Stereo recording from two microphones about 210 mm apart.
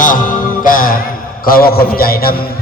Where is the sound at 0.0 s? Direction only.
40° left (ahead or behind).